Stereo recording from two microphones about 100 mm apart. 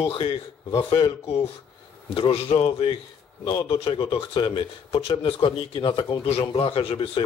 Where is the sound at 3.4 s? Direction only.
55° left (ahead or behind).